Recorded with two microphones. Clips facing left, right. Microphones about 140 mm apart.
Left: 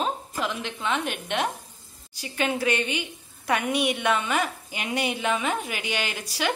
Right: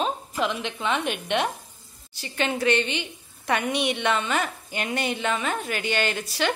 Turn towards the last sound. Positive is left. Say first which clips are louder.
# right 2 dB
turn(degrees=10)  # may be behind; listen again after turning